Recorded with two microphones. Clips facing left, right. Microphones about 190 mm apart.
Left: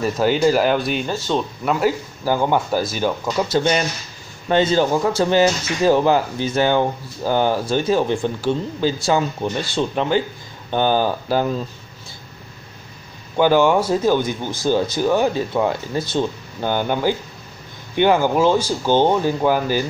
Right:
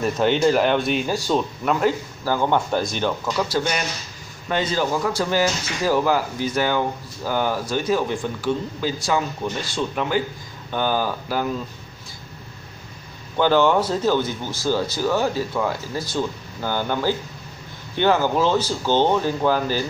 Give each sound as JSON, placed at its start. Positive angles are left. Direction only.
{"t": 0.0, "sound": "speech", "side_deg": 5}
{"t": 1.1, "sound": "speech", "side_deg": -10}
{"t": 1.6, "sound": "speech", "side_deg": 5}
{"t": 3.3, "sound": "speech", "side_deg": 25}
{"t": 13.4, "sound": "speech", "side_deg": 10}